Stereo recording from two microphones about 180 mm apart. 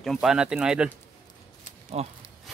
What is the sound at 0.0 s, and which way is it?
Speech, centre (ahead or behind).